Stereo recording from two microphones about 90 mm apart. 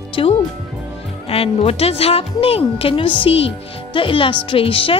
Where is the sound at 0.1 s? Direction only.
90° left.